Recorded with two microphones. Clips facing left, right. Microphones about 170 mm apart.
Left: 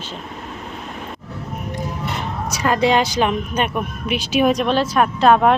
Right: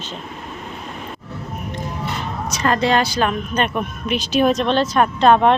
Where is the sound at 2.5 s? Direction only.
10° left (ahead or behind).